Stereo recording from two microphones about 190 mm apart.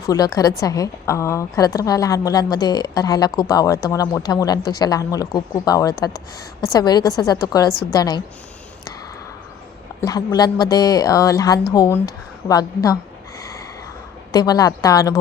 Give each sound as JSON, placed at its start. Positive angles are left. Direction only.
{"t": 0.1, "sound": "a woman's voice", "side_deg": 15}
{"t": 10.0, "sound": "a woman's voice", "side_deg": 20}
{"t": 14.3, "sound": "a woman's voice", "side_deg": 20}